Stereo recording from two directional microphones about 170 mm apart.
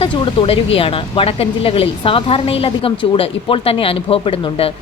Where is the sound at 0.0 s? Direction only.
30° left (ahead or behind).